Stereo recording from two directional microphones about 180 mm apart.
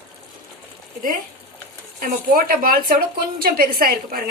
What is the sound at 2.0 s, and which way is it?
A woman's voice, 50° right (ahead or behind).